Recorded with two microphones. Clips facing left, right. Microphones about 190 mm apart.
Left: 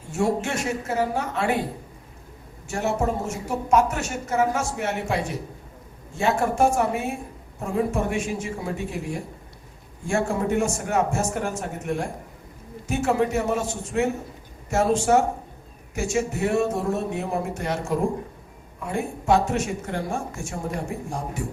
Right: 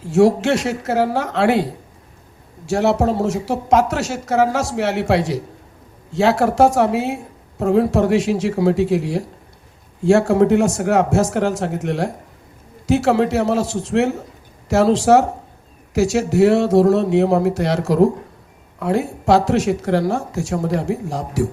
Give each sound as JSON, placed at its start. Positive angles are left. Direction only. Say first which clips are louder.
{"t": 0.0, "sound": "speech", "louder": "right 10 dB", "side_deg": -90}
{"t": 2.6, "sound": "speech", "louder": "right 8 dB", "side_deg": -80}
{"t": 6.1, "sound": "speech", "louder": "right 7 dB", "side_deg": -80}
{"t": 7.6, "sound": "speech", "louder": "right 9 dB", "side_deg": -75}
{"t": 10.0, "sound": "speech", "louder": "right 11 dB", "side_deg": -75}